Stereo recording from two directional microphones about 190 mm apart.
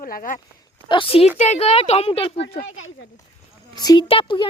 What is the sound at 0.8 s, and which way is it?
Speech, 25° left (ahead or behind).